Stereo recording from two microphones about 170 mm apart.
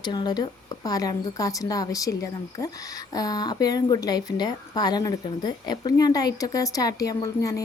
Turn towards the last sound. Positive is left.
turn(degrees=20)  # may be behind; listen again after turning